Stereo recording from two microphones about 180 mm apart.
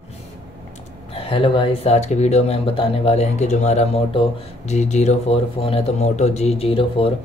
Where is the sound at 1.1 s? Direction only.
30° left (ahead or behind).